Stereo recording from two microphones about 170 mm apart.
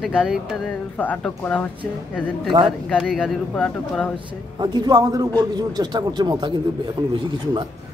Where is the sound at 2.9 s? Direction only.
5° left (ahead or behind).